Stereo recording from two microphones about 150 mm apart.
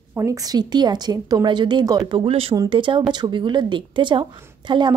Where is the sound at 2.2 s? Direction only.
40° right (ahead or behind).